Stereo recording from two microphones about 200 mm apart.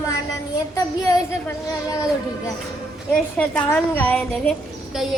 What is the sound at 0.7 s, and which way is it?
Speech, 15° left (ahead or behind).